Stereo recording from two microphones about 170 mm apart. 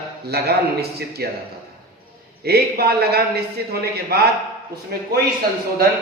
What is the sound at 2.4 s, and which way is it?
A man's voice, 65° right (ahead or behind).